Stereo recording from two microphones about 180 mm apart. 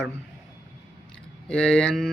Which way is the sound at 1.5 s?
5° left (ahead or behind).